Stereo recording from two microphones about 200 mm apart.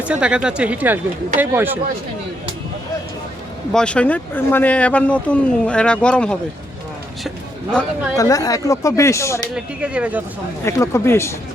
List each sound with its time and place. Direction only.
0.0 s speech: 5° right (ahead or behind)
3.7 s speech: 5° left (ahead or behind)
7.3 s a sound: 5° left (ahead or behind)
8.1 s speech: 15° left (ahead or behind)
9.6 s speech: 5° right (ahead or behind)
10.6 s speech: 15° left (ahead or behind)